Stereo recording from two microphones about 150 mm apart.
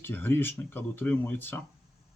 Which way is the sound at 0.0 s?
15° left (ahead or behind).